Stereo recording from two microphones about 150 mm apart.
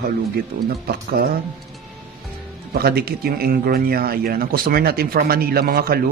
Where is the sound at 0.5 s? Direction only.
75° right (ahead or behind).